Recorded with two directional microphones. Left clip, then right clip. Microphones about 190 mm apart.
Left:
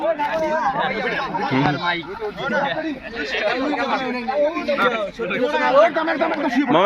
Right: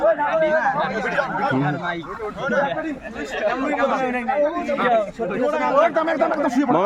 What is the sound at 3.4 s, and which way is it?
A man's voice, 50° right (ahead or behind).